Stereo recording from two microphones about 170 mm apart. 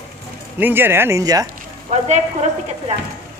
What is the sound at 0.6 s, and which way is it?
Speech, 10° right (ahead or behind).